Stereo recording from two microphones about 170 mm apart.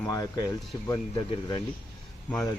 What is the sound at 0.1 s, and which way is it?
Speech, 20° left (ahead or behind).